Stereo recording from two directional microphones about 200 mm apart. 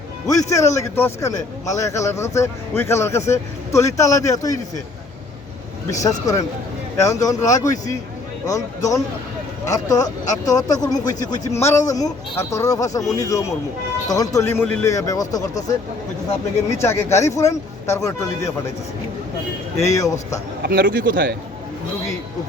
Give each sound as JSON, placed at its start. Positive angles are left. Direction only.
{"t": 0.3, "sound": "a man's voice", "side_deg": 15}
{"t": 6.0, "sound": "a man's voice", "side_deg": 15}
{"t": 16.7, "sound": "a man's voice", "side_deg": 15}
{"t": 19.8, "sound": "a man's voice", "side_deg": 15}
{"t": 20.6, "sound": "a man's voice", "side_deg": -55}